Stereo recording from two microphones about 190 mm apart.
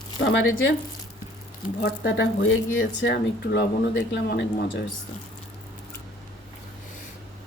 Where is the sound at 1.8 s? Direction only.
75° left (ahead or behind).